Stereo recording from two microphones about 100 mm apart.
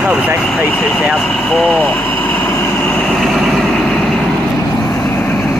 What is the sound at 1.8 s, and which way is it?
Vehicle, 20° left (ahead or behind).